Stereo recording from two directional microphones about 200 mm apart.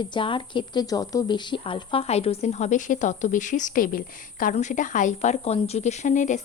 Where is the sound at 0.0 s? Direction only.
25° left (ahead or behind).